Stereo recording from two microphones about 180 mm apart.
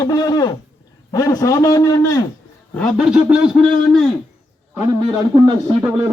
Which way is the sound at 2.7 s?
Centre (ahead or behind).